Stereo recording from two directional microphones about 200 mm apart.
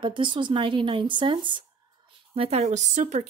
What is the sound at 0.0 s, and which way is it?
Speech, 25° right (ahead or behind).